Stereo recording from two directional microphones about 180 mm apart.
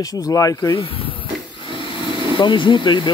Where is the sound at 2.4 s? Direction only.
25° left (ahead or behind).